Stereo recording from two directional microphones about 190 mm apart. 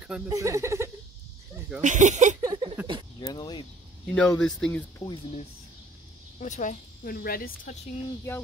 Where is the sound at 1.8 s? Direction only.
40° right (ahead or behind).